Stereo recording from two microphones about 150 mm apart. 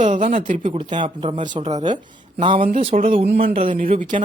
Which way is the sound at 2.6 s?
55° right (ahead or behind).